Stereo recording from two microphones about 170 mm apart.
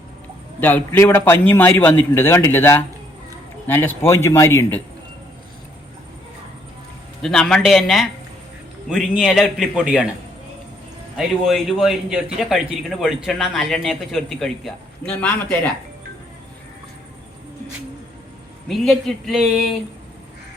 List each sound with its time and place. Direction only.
0.6 s a man's voice: 15° left (ahead or behind)
7.2 s a man's voice: 5° left (ahead or behind)
11.2 s a man's voice: centre (ahead or behind)
18.7 s a man's voice: centre (ahead or behind)